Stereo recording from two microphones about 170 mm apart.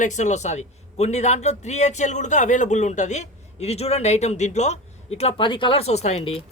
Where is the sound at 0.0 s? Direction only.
45° left (ahead or behind).